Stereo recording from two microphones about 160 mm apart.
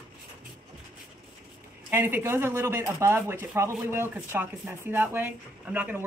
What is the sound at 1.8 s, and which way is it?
Speech, 15° right (ahead or behind).